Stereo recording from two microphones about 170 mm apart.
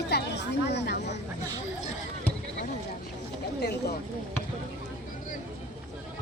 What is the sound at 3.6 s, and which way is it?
Speech, 75° left (ahead or behind).